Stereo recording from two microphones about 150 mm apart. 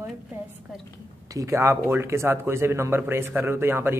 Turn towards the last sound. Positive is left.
turn(degrees=-15)  # may be behind; listen again after turning